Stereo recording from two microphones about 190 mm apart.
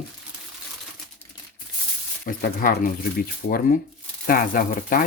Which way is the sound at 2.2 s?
50° left (ahead or behind).